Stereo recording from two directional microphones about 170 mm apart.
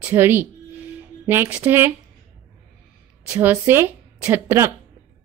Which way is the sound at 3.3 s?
10° right (ahead or behind).